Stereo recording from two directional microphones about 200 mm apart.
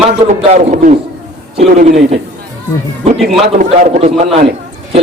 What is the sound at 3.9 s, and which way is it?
A man's voice, 35° right (ahead or behind).